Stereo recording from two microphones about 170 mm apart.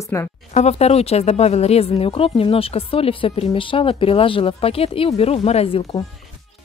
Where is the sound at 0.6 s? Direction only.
40° left (ahead or behind).